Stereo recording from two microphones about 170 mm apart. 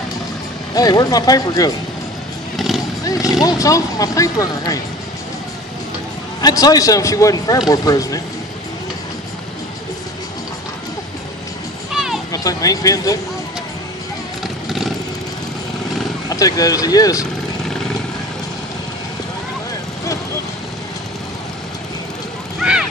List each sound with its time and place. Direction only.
0.7 s speech: 20° left (ahead or behind)
2.5 s vehicle: centre (ahead or behind)
3.4 s speech: 20° left (ahead or behind)
6.4 s speech: 20° left (ahead or behind)
11.9 s children playing: 5° right (ahead or behind)
12.3 s speech: 20° left (ahead or behind)
16.3 s speech: 20° left (ahead or behind)
22.6 s a sound: 5° right (ahead or behind)